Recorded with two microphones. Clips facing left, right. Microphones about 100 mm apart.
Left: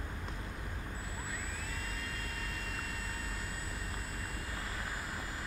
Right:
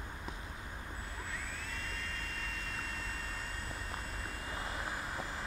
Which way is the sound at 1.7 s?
5° left (ahead or behind).